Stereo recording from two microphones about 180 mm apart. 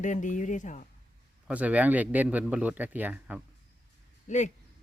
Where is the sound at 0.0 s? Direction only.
45° left (ahead or behind).